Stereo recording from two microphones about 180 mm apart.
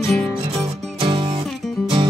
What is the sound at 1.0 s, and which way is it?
Music, 30° right (ahead or behind).